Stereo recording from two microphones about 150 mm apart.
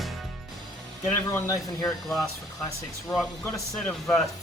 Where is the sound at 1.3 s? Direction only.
25° left (ahead or behind).